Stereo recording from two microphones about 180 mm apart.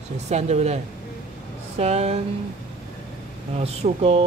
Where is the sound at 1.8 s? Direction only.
35° right (ahead or behind).